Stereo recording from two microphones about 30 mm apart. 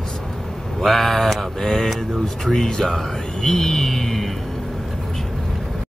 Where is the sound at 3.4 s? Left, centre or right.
Centre.